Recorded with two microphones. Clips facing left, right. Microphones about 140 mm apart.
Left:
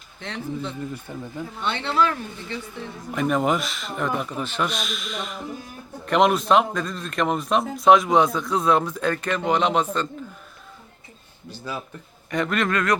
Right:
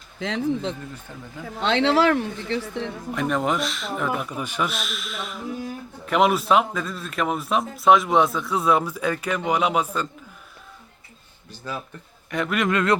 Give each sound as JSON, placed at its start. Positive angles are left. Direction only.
{"t": 0.2, "sound": "speech", "side_deg": -90}
{"t": 1.1, "sound": "speech", "side_deg": 15}
{"t": 1.5, "sound": "speech", "side_deg": -90}
{"t": 3.1, "sound": "speech", "side_deg": 0}
{"t": 12.3, "sound": "speech", "side_deg": -5}
{"t": 12.6, "sound": "speech", "side_deg": -25}